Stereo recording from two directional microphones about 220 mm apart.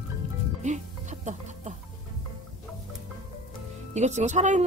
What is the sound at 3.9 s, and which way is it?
Speech, 30° right (ahead or behind).